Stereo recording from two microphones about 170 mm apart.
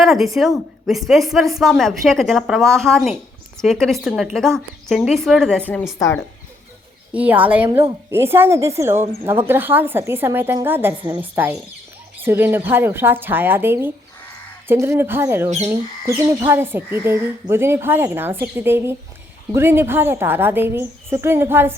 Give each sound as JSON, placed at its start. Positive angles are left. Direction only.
{"t": 0.0, "sound": "a sound", "side_deg": 0}
{"t": 0.3, "sound": "a woman's voice", "side_deg": 0}
{"t": 5.9, "sound": "speech", "side_deg": 20}
{"t": 7.1, "sound": "a woman's voice", "side_deg": -10}
{"t": 15.4, "sound": "speech", "side_deg": -40}
{"t": 15.7, "sound": "a woman's voice", "side_deg": -15}